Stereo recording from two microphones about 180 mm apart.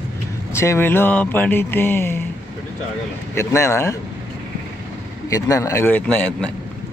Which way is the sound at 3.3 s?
15° left (ahead or behind).